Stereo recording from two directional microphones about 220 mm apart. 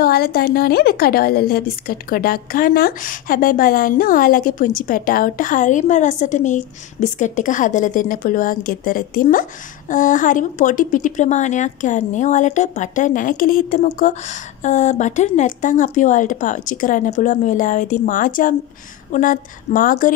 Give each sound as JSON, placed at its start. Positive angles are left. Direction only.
{"t": 0.0, "sound": "a woman's voice", "side_deg": 45}